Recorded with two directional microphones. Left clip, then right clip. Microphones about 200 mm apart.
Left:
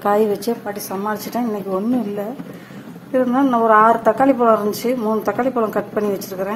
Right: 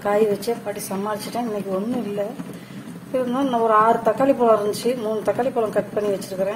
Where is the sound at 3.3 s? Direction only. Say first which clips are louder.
Left 4 dB; 25° left (ahead or behind).